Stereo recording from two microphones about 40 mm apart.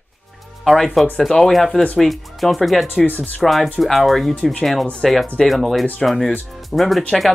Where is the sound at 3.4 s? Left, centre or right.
Centre.